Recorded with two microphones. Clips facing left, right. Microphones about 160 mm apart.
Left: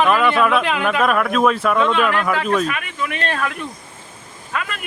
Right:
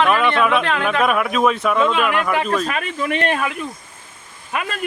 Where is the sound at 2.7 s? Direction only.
30° right (ahead or behind); by 3.5 s 15° right (ahead or behind).